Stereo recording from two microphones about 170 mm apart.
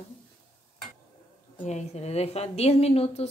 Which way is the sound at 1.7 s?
40° left (ahead or behind).